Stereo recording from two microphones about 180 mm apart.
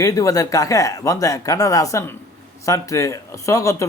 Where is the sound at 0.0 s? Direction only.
20° left (ahead or behind).